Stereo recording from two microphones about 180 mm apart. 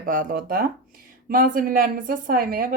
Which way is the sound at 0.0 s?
50° right (ahead or behind).